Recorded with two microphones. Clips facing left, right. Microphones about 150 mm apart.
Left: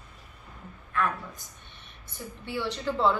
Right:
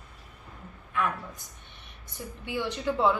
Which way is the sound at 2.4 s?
15° right (ahead or behind).